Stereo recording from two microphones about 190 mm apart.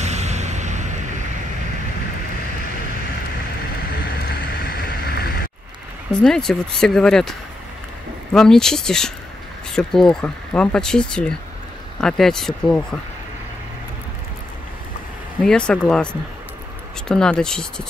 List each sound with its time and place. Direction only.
0.0 s a sound: 35° right (ahead or behind)
4.3 s vehicle: 60° left (ahead or behind)
6.1 s speech: 5° left (ahead or behind)
15.4 s speech: 5° left (ahead or behind)